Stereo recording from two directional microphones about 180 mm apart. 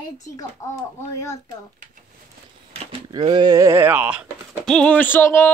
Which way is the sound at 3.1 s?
25° right (ahead or behind).